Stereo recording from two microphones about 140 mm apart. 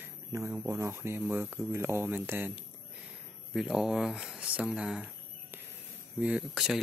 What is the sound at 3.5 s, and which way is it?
Speech, 5° right (ahead or behind).